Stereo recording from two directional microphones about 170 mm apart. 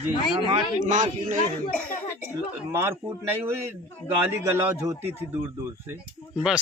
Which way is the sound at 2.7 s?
15° right (ahead or behind).